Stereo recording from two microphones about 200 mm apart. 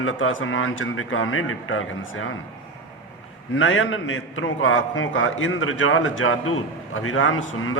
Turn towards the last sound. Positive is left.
turn(degrees=80)